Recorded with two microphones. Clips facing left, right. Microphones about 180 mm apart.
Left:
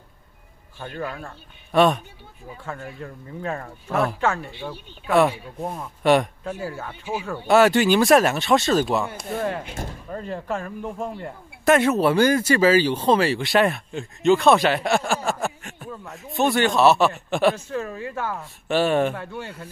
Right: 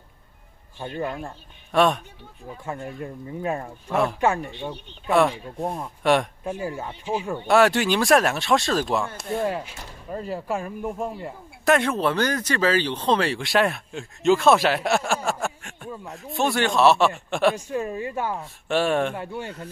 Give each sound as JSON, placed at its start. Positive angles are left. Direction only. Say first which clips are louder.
{"t": 0.7, "sound": "speech", "louder": "right 2 dB", "side_deg": -20}
{"t": 1.7, "sound": "speech", "louder": "left 2 dB", "side_deg": 0}
{"t": 2.6, "sound": "speech", "louder": "right 2 dB", "side_deg": -20}
{"t": 3.9, "sound": "speech", "louder": "even", "side_deg": 0}
{"t": 4.2, "sound": "speech", "louder": "right 2 dB", "side_deg": -15}
{"t": 5.1, "sound": "speech", "louder": "left 1 dB", "side_deg": 5}
{"t": 6.4, "sound": "speech", "louder": "right 1 dB", "side_deg": -15}
{"t": 7.4, "sound": "speech", "louder": "left 3 dB", "side_deg": 0}
{"t": 17.6, "sound": "speech", "louder": "right 2 dB", "side_deg": -15}
{"t": 18.4, "sound": "speech", "louder": "left 4 dB", "side_deg": 0}
{"t": 19.1, "sound": "speech", "louder": "right 1 dB", "side_deg": -15}